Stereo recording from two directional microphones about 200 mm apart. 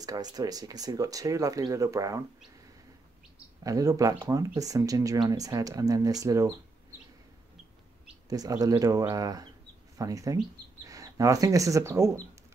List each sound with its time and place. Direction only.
0.0 s speech: 20° right (ahead or behind)
3.6 s speech: 15° right (ahead or behind)
8.3 s speech: 20° right (ahead or behind)